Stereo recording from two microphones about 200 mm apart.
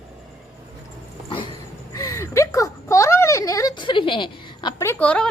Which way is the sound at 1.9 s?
15° left (ahead or behind).